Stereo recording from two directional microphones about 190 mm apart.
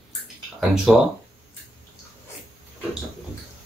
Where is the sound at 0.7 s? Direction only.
5° right (ahead or behind).